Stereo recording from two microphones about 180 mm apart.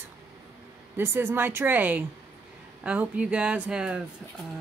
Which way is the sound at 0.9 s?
10° right (ahead or behind).